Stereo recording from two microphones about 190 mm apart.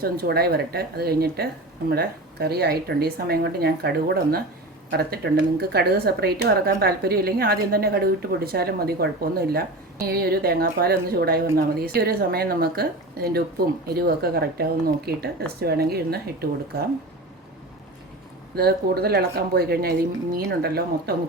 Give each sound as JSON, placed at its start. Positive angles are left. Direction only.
{"t": 0.0, "sound": "a woman's voice", "side_deg": -55}
{"t": 10.1, "sound": "a woman's voice", "side_deg": -55}
{"t": 18.5, "sound": "a woman's voice", "side_deg": -55}